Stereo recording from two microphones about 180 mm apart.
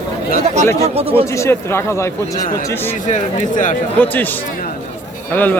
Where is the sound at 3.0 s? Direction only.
45° left (ahead or behind).